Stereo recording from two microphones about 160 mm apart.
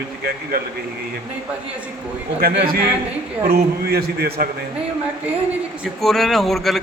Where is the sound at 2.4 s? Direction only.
70° right (ahead or behind).